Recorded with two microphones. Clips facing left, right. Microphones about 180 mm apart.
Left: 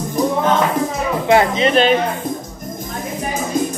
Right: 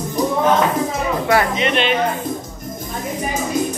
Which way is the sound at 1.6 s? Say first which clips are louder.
Left 5 dB; 40° left (ahead or behind).